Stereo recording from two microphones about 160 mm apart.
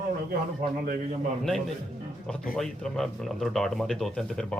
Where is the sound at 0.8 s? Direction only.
60° right (ahead or behind).